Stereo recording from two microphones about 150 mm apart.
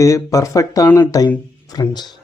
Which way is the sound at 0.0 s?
20° left (ahead or behind).